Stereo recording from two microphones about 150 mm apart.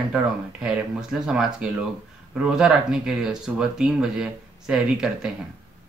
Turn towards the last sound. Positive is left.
turn(degrees=-5)  # may be behind; listen again after turning